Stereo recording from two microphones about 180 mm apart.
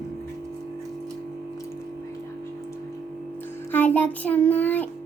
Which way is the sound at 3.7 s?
10° left (ahead or behind).